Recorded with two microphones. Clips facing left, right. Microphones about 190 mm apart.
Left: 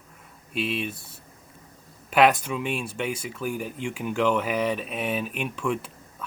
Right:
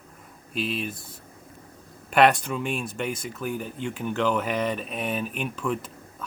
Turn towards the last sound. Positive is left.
turn(degrees=0)  # may be behind; listen again after turning